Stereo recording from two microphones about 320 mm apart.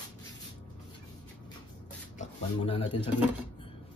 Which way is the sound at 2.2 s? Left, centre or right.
Centre.